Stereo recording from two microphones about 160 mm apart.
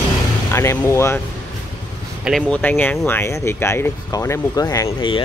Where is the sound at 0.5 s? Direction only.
15° left (ahead or behind).